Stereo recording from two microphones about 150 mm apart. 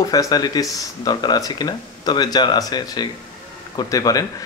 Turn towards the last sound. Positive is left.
turn(degrees=25)  # may be behind; listen again after turning